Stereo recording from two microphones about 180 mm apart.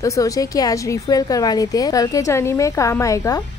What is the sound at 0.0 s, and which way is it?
Speech, 20° left (ahead or behind).